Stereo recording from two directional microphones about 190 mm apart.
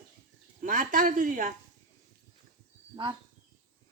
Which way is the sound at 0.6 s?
45° right (ahead or behind).